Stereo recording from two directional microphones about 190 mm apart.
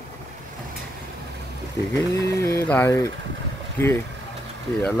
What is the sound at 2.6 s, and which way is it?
Speech, 10° left (ahead or behind).